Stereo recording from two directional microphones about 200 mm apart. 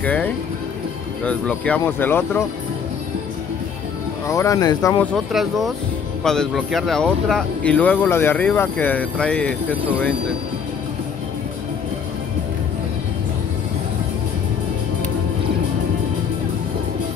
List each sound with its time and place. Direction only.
0.0 s music: 5° left (ahead or behind)
1.2 s speech: 5° left (ahead or behind)
4.3 s speech: 15° left (ahead or behind)
5.1 s speech: centre (ahead or behind)